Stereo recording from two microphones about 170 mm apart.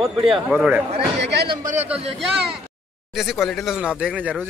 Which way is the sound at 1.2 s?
75° right (ahead or behind).